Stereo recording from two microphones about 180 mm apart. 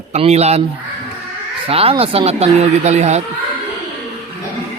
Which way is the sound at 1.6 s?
30° right (ahead or behind).